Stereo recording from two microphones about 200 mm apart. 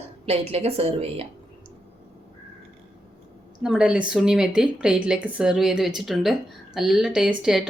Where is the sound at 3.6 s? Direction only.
5° right (ahead or behind).